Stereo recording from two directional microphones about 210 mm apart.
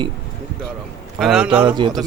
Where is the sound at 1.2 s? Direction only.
Centre (ahead or behind).